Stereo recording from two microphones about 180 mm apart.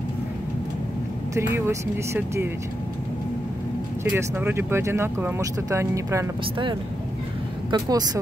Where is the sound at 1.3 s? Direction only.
15° right (ahead or behind).